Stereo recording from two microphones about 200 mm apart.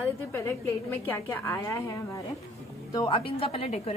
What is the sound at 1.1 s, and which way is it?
Speech, 10° left (ahead or behind).